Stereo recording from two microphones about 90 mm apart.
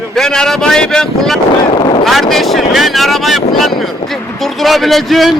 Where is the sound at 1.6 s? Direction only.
65° left (ahead or behind).